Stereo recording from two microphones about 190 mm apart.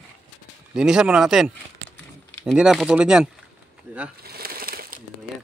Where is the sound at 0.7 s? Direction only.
5° right (ahead or behind).